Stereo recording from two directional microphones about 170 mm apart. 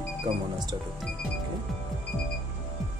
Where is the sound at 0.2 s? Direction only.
25° right (ahead or behind).